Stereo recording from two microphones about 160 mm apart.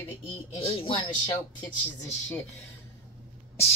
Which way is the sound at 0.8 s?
35° left (ahead or behind).